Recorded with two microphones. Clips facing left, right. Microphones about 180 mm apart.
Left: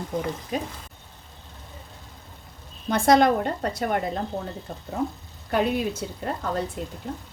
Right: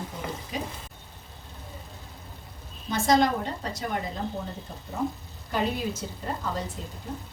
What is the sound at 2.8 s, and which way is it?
Speech, 60° left (ahead or behind).